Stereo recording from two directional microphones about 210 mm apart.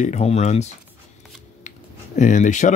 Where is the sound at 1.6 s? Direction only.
35° left (ahead or behind).